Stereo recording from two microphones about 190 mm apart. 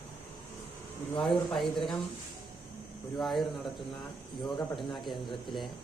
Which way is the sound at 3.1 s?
Centre (ahead or behind).